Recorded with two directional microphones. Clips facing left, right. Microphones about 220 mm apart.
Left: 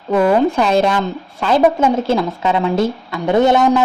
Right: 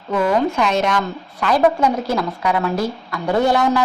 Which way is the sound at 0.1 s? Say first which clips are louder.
Left 4 dB; 35° left (ahead or behind).